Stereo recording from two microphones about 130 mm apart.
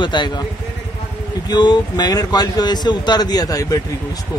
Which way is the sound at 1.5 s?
35° left (ahead or behind).